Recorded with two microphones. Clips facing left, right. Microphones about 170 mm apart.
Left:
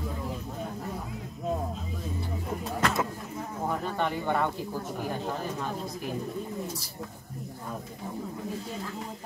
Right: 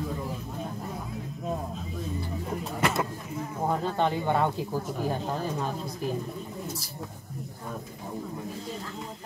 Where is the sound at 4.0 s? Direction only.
20° right (ahead or behind).